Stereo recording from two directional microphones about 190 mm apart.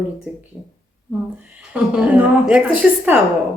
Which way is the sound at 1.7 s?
10° right (ahead or behind).